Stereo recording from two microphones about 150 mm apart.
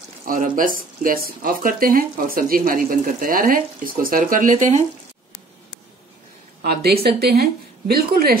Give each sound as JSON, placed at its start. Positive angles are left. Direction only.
{"t": 0.2, "sound": "speech", "side_deg": -65}
{"t": 6.6, "sound": "speech", "side_deg": -90}